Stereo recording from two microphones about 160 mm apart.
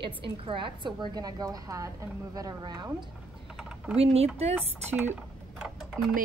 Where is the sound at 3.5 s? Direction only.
5° right (ahead or behind).